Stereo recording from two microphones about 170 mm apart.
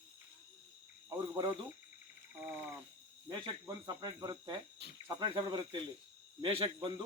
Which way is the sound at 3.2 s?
25° right (ahead or behind).